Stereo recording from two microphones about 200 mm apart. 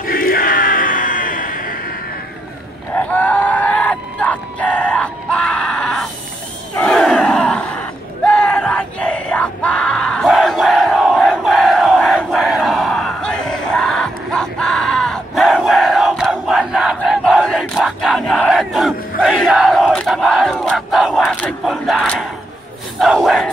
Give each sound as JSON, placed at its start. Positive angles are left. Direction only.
{"t": 0.0, "sound": "music", "side_deg": 45}
{"t": 2.9, "sound": "a sound", "side_deg": 10}
{"t": 6.8, "sound": "battle cry", "side_deg": 0}